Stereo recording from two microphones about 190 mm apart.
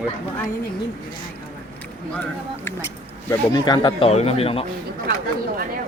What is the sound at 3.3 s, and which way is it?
Speech, 20° left (ahead or behind).